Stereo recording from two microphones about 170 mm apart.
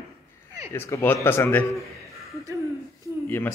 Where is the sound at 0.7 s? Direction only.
15° left (ahead or behind).